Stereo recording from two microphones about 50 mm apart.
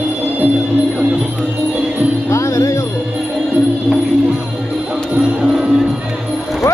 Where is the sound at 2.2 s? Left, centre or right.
Left.